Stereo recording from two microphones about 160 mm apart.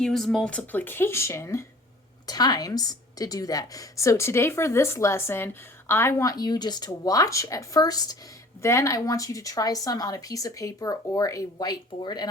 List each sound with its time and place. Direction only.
0.0 s a woman's voice: centre (ahead or behind); by 12.3 s 25° left (ahead or behind)